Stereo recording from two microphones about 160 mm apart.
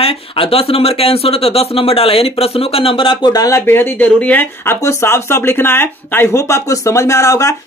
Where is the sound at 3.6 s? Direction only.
10° left (ahead or behind).